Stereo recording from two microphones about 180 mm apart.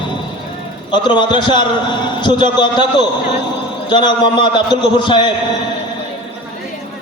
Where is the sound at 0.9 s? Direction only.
25° left (ahead or behind).